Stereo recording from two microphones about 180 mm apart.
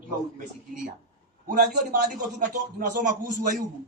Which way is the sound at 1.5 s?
50° right (ahead or behind).